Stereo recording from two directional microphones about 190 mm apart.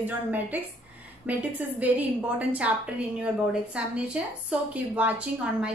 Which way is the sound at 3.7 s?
5° right (ahead or behind).